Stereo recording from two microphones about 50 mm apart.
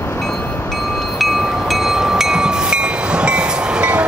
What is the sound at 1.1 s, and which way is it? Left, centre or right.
Train, centre.